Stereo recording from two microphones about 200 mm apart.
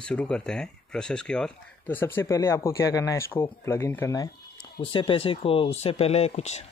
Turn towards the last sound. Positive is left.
turn(degrees=35)  # may be behind; listen again after turning